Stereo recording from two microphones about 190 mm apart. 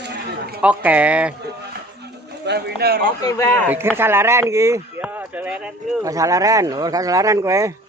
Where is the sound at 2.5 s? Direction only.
60° right (ahead or behind).